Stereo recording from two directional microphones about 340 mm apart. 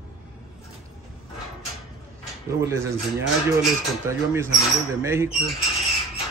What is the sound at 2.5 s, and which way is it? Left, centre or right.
Speech, centre.